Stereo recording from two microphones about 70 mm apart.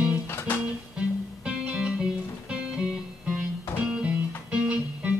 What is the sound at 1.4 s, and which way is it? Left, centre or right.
Music, centre.